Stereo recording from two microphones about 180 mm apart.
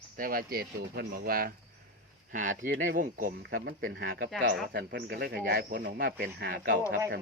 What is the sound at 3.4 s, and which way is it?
A man's voice, 70° right (ahead or behind).